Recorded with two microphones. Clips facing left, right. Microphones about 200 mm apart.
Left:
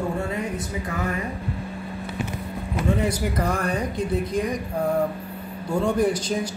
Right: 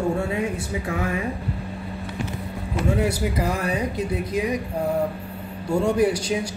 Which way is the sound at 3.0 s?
10° right (ahead or behind).